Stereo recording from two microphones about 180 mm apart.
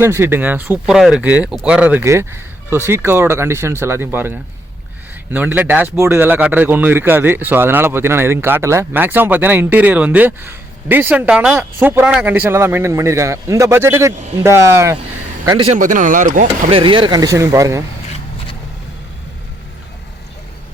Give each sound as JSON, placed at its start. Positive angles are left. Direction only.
{"t": 0.0, "sound": "a man's voice", "side_deg": -15}
{"t": 15.5, "sound": "a man's voice", "side_deg": -30}
{"t": 15.8, "sound": "speech", "side_deg": -45}
{"t": 16.7, "sound": "speech", "side_deg": -25}